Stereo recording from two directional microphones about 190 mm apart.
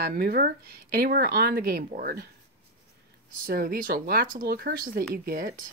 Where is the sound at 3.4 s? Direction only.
50° right (ahead or behind).